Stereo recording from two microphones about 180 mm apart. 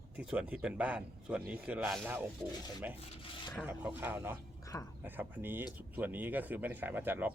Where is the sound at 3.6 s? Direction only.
10° right (ahead or behind).